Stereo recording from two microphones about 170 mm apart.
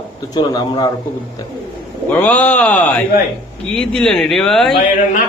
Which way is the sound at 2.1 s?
10° left (ahead or behind).